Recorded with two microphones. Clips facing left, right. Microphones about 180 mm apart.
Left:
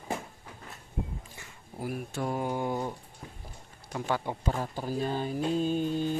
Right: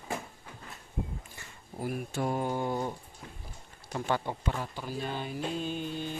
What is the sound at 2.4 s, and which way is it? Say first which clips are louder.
Mantra: even; 10° left (ahead or behind).